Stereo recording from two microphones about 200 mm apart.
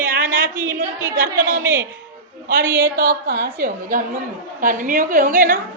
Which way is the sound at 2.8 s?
50° right (ahead or behind).